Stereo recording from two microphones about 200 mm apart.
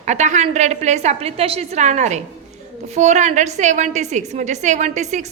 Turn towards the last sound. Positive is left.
turn(degrees=-35)  # may be behind; listen again after turning